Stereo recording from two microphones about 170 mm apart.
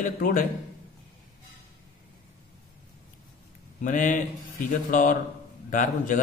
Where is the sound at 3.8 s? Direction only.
50° left (ahead or behind).